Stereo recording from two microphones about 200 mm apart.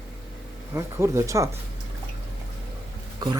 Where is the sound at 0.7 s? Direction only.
15° right (ahead or behind).